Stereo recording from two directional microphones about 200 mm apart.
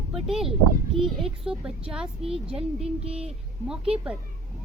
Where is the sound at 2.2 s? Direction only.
30° right (ahead or behind).